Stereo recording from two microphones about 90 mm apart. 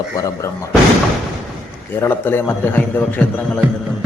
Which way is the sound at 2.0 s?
25° left (ahead or behind).